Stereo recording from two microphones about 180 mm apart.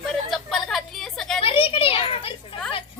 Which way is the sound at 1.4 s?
30° left (ahead or behind).